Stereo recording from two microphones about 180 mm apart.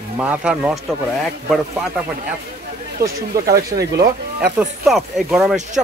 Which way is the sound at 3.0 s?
55° right (ahead or behind).